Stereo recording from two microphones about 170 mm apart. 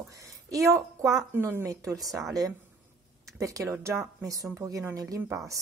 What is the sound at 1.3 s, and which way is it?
Speech, 15° right (ahead or behind).